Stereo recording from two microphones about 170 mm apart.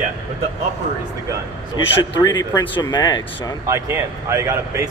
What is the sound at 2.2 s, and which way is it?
Speech, 20° left (ahead or behind).